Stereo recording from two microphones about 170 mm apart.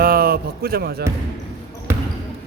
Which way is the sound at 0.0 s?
65° right (ahead or behind).